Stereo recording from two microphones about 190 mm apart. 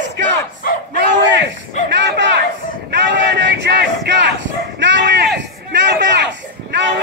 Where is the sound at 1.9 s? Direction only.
65° right (ahead or behind).